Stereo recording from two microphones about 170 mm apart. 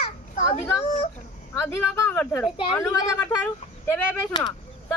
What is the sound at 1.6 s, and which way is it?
Speech, 15° left (ahead or behind).